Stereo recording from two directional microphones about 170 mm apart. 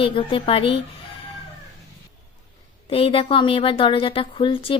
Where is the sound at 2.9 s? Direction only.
35° left (ahead or behind).